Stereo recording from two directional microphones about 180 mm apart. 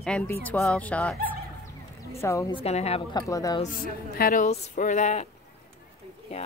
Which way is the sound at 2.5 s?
35° left (ahead or behind).